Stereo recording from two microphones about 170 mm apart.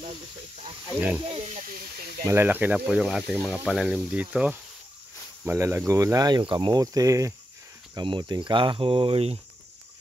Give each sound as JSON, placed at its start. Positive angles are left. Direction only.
{"t": 0.9, "sound": "speech", "side_deg": -10}
{"t": 1.3, "sound": "speech", "side_deg": -40}
{"t": 2.2, "sound": "speech", "side_deg": -15}